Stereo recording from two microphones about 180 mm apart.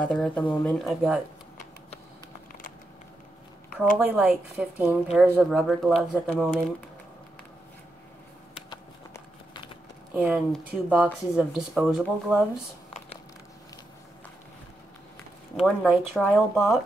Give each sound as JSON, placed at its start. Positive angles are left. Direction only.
{"t": 0.0, "sound": "speech", "side_deg": 5}
{"t": 4.0, "sound": "a woman's voice", "side_deg": -5}
{"t": 8.6, "sound": "a sound", "side_deg": 25}
{"t": 10.1, "sound": "speech", "side_deg": -5}
{"t": 15.6, "sound": "speech", "side_deg": 0}